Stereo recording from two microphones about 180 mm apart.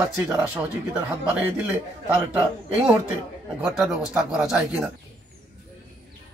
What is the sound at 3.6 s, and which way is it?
A man's voice, 5° right (ahead or behind).